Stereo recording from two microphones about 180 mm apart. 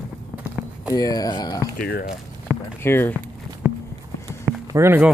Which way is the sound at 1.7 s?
60° left (ahead or behind).